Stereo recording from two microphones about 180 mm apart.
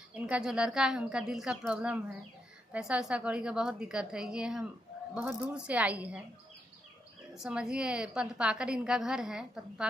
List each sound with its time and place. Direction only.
0.3 s a woman's voice: 5° right (ahead or behind)
7.4 s a woman's voice: 5° right (ahead or behind)